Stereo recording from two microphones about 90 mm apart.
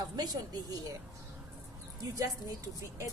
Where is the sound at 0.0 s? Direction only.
45° right (ahead or behind).